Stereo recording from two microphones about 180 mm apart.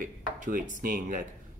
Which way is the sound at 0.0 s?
50° right (ahead or behind).